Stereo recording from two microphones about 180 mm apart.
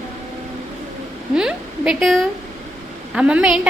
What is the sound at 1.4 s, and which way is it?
A woman's voice, 5° right (ahead or behind).